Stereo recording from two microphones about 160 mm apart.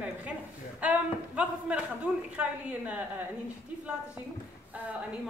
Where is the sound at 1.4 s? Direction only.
5° right (ahead or behind).